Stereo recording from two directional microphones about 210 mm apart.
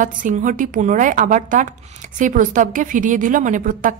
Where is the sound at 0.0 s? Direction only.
40° right (ahead or behind).